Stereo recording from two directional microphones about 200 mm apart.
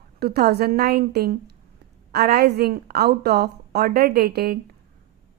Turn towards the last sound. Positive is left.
turn(degrees=-50)  # may be behind; listen again after turning